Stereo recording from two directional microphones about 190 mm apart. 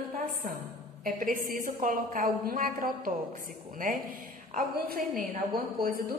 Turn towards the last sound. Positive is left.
turn(degrees=-50)  # may be behind; listen again after turning